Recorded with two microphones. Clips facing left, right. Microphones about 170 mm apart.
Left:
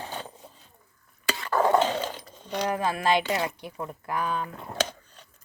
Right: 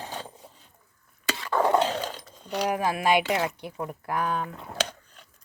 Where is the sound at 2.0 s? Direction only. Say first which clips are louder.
Left 1 dB; 25° left (ahead or behind).